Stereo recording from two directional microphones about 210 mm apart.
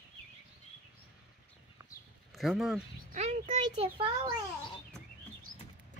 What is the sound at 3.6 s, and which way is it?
Speech, 25° right (ahead or behind).